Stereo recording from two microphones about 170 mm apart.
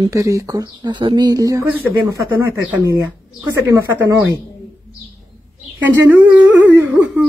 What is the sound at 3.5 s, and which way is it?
Speech, 20° right (ahead or behind).